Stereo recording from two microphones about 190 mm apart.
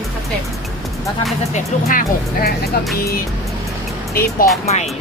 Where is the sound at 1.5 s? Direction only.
45° left (ahead or behind).